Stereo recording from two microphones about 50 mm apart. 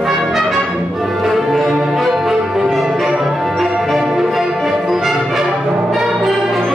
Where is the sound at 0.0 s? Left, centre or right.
Centre.